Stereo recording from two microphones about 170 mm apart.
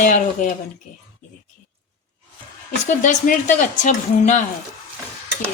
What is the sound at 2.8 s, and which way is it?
A woman's voice, 50° left (ahead or behind).